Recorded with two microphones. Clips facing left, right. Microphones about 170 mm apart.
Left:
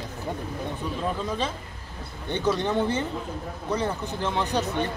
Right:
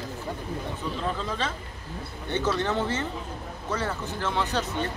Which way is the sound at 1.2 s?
10° left (ahead or behind).